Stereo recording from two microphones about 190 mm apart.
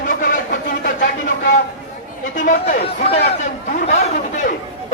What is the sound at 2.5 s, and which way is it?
Speech, 40° left (ahead or behind).